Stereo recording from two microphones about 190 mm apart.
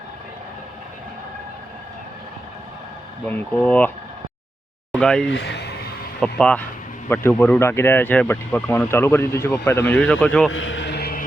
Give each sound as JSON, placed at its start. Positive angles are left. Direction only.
{"t": 3.2, "sound": "speech", "side_deg": 10}
{"t": 4.9, "sound": "speech", "side_deg": 5}
{"t": 5.3, "sound": "a sound", "side_deg": 65}
{"t": 6.1, "sound": "speech", "side_deg": 5}
{"t": 10.5, "sound": "vehicle", "side_deg": 85}